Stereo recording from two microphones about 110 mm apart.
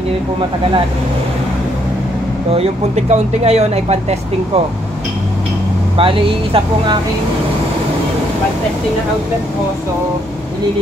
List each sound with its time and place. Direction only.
2.5 s speech: 75° right (ahead or behind)
5.9 s speech: 55° right (ahead or behind)